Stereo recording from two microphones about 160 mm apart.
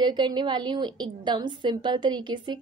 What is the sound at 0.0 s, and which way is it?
A woman's voice, 30° right (ahead or behind).